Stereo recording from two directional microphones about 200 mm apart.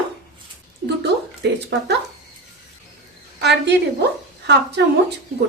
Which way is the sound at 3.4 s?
60° right (ahead or behind).